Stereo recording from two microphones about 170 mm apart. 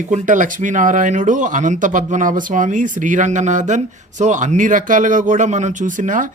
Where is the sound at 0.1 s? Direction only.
50° right (ahead or behind).